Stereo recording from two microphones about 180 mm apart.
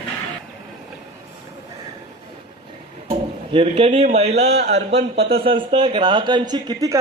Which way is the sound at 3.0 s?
30° right (ahead or behind).